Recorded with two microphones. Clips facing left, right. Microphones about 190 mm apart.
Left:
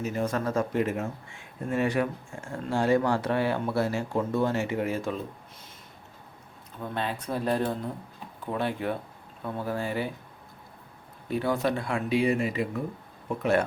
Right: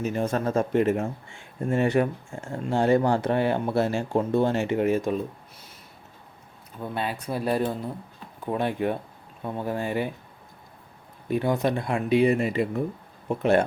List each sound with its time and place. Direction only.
0.2 s speech: 25° right (ahead or behind)
6.9 s speech: 10° right (ahead or behind)
11.3 s speech: 15° right (ahead or behind)